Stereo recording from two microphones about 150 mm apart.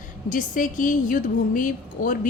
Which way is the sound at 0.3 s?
60° left (ahead or behind).